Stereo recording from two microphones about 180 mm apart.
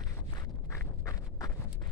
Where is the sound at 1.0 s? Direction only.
20° left (ahead or behind).